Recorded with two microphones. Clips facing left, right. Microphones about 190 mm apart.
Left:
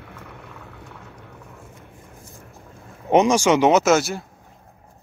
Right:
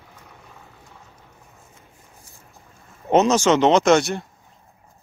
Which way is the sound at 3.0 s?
10° left (ahead or behind).